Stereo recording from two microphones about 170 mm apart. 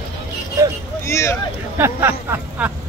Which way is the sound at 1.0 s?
15° left (ahead or behind).